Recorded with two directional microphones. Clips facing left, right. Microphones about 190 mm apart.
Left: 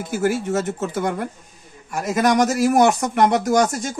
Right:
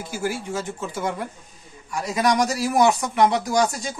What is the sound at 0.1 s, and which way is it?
A man's voice, 55° left (ahead or behind).